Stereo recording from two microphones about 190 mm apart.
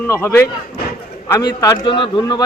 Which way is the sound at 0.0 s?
15° left (ahead or behind).